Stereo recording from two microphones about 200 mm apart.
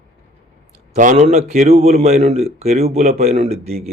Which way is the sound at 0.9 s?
35° right (ahead or behind).